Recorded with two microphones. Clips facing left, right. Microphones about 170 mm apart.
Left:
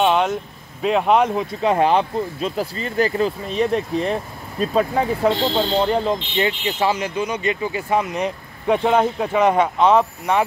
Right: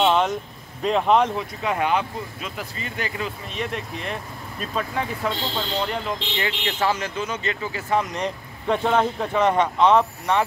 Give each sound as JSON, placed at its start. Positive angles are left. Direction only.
{"t": 0.1, "sound": "speech", "side_deg": 0}
{"t": 1.3, "sound": "speech", "side_deg": 30}
{"t": 6.6, "sound": "speech", "side_deg": 10}